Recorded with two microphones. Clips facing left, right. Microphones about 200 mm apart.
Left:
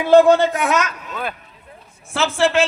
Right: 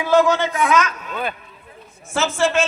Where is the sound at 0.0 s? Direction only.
55° left (ahead or behind).